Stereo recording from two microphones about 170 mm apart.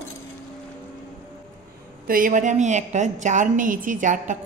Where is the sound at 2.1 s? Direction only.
55° right (ahead or behind).